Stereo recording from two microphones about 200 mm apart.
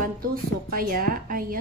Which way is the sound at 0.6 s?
45° right (ahead or behind).